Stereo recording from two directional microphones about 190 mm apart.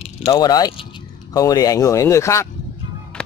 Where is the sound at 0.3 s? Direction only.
20° left (ahead or behind).